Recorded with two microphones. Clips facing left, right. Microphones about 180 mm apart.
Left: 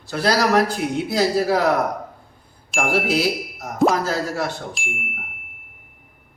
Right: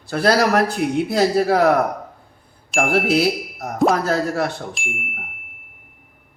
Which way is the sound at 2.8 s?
55° right (ahead or behind).